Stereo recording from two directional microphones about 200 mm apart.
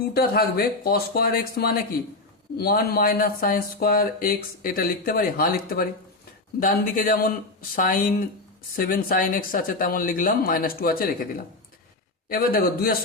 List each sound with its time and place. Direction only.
0.1 s speech: 50° left (ahead or behind)
12.3 s speech: 45° left (ahead or behind)